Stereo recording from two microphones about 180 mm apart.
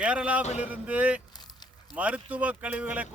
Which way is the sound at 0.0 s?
5° right (ahead or behind).